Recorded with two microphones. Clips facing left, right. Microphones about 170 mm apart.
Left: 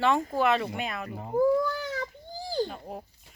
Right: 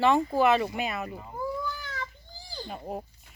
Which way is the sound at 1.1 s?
50° left (ahead or behind).